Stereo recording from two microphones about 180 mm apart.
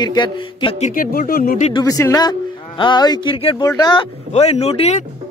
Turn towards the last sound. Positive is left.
turn(degrees=35)  # may be behind; listen again after turning